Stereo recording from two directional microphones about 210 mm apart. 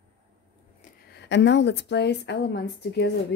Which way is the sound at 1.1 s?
55° left (ahead or behind).